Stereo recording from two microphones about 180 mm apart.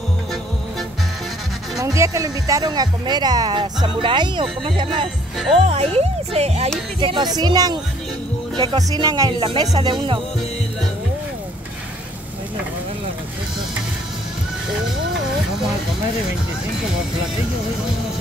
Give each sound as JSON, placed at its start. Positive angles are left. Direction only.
{"t": 1.8, "sound": "speech", "side_deg": -20}